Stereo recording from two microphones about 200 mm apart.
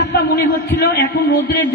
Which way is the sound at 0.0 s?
55° left (ahead or behind).